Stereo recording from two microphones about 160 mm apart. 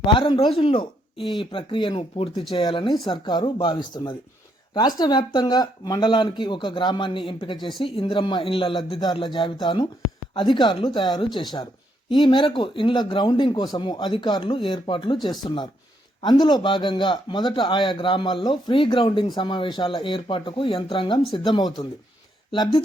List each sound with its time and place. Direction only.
0.1 s a man's voice: 30° left (ahead or behind)